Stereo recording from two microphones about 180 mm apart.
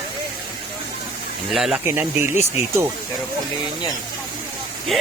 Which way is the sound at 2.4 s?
35° left (ahead or behind).